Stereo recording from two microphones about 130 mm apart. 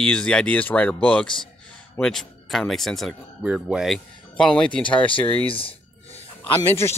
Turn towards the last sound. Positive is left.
turn(degrees=20)  # may be behind; listen again after turning